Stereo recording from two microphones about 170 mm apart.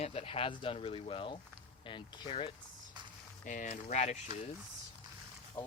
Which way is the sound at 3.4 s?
50° left (ahead or behind).